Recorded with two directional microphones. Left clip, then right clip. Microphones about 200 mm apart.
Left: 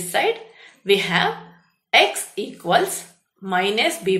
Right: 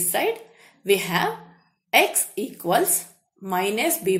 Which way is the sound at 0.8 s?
45° right (ahead or behind).